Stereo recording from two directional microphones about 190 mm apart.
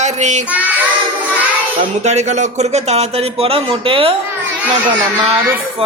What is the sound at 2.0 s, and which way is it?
Speech, 35° right (ahead or behind).